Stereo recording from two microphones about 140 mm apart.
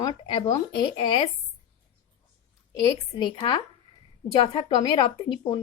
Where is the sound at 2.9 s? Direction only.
35° left (ahead or behind).